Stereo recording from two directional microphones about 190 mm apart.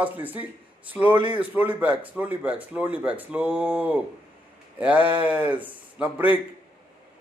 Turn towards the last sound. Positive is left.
turn(degrees=-10)  # may be behind; listen again after turning